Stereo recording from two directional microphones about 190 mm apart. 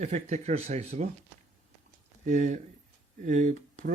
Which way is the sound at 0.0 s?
35° right (ahead or behind).